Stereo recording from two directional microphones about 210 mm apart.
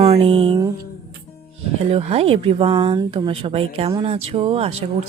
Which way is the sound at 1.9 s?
30° right (ahead or behind).